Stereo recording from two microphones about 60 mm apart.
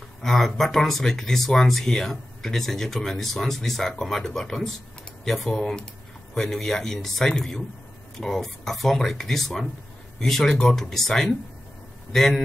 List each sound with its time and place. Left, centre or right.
0.2 s a man's voice: centre